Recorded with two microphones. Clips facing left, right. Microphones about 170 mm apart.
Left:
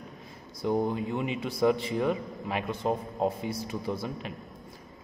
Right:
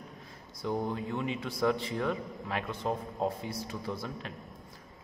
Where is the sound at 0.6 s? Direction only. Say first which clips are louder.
Left 5 dB; 15° left (ahead or behind).